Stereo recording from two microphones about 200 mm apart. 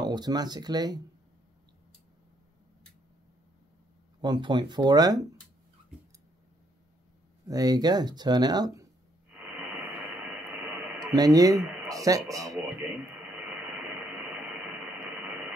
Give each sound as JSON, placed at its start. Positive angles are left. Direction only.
{"t": 0.0, "sound": "speech", "side_deg": -20}
{"t": 4.2, "sound": "speech", "side_deg": -20}
{"t": 7.4, "sound": "speech", "side_deg": -20}
{"t": 9.3, "sound": "radio", "side_deg": -5}
{"t": 11.1, "sound": "a man's voice", "side_deg": -20}